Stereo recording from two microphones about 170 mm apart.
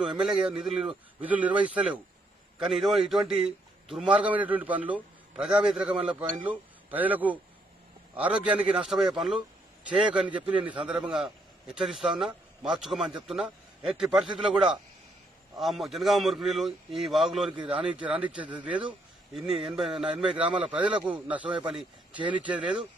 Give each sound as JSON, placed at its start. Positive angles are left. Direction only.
{"t": 0.0, "sound": "a man's voice", "side_deg": -5}
{"t": 10.5, "sound": "a man's voice", "side_deg": -30}
{"t": 10.9, "sound": "a man's voice", "side_deg": -5}
{"t": 17.5, "sound": "a man's voice", "side_deg": -30}
{"t": 17.9, "sound": "a man's voice", "side_deg": -5}